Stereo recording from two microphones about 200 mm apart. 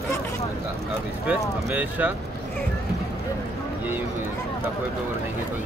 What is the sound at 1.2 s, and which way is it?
Speech, 10° right (ahead or behind).